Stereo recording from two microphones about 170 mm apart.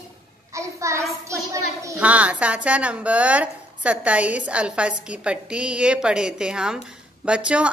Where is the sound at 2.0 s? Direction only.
10° right (ahead or behind).